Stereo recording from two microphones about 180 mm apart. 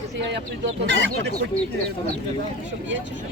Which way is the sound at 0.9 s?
85° right.